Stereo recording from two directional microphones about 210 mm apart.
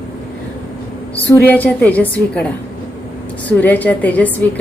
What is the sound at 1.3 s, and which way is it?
A woman's voice, 10° left (ahead or behind).